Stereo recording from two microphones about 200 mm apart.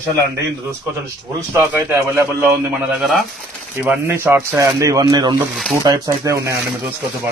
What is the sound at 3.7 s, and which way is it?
Speech, 10° right (ahead or behind).